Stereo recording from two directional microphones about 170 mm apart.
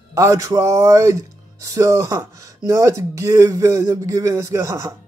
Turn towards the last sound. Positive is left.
turn(degrees=-20)  # may be behind; listen again after turning